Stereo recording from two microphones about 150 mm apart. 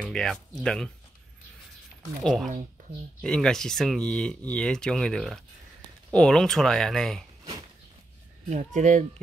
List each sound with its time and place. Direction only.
0.0 s speech: 5° left (ahead or behind)
2.2 s speech: centre (ahead or behind)
8.5 s speech: 55° right (ahead or behind)